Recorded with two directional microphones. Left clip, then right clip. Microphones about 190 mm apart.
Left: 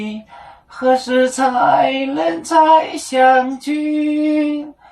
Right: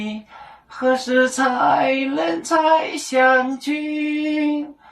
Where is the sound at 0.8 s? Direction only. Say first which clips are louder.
Left 3 dB; 15° right (ahead or behind).